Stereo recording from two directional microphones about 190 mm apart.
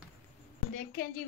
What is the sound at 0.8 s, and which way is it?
Speech, 50° left (ahead or behind).